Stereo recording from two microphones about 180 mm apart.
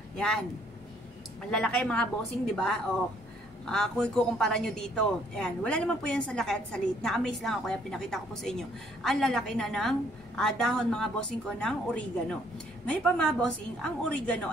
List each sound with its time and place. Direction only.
0.1 s speech: 5° left (ahead or behind)
1.5 s a man's voice: 5° left (ahead or behind)